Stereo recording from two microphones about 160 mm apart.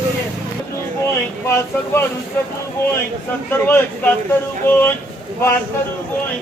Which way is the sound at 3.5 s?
15° left (ahead or behind).